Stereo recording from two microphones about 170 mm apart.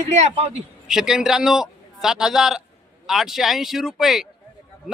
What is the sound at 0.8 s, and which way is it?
A man's voice, 5° right (ahead or behind).